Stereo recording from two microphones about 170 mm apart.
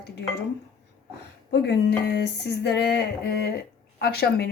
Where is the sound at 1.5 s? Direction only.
85° left.